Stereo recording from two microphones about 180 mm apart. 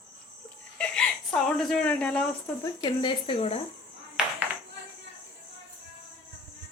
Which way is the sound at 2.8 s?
25° left (ahead or behind).